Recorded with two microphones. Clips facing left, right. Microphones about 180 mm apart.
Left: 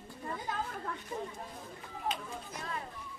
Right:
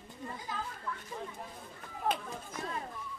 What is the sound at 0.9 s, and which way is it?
Speech, 60° left (ahead or behind).